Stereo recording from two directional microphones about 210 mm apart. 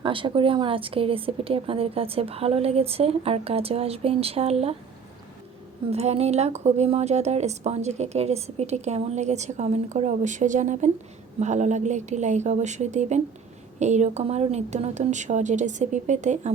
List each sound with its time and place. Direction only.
0.0 s speech: 25° right (ahead or behind)
5.9 s speech: 30° right (ahead or behind)